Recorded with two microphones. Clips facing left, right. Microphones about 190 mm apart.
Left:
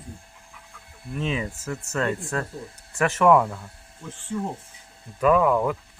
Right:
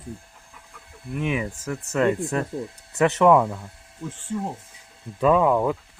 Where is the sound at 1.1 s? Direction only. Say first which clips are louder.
Right 2 dB; 15° right (ahead or behind).